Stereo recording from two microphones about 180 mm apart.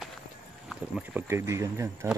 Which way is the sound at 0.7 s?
5° right (ahead or behind).